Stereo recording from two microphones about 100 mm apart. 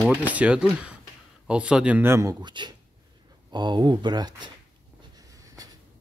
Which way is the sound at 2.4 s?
50° right (ahead or behind).